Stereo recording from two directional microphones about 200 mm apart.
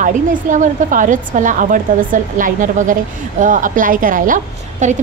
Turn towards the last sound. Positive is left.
turn(degrees=-40)  # may be behind; listen again after turning